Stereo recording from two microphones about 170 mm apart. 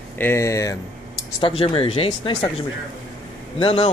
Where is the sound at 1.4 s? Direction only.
30° left (ahead or behind).